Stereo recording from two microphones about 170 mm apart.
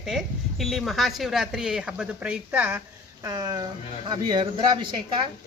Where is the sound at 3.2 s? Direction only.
20° right (ahead or behind).